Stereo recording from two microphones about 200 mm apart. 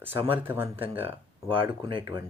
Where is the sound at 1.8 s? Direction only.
25° right (ahead or behind).